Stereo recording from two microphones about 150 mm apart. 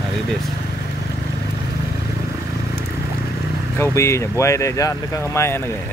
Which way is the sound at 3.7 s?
15° left (ahead or behind).